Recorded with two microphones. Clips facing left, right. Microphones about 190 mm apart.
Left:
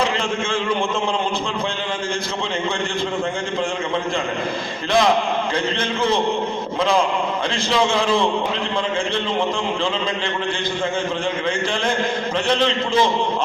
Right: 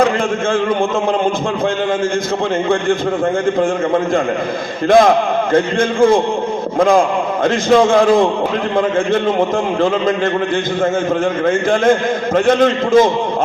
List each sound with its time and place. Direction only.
3.6 s a man's voice: 50° right (ahead or behind)
11.4 s a man's voice: 50° right (ahead or behind)